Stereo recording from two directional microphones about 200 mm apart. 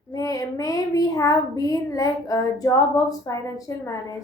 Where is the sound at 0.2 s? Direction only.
15° left (ahead or behind).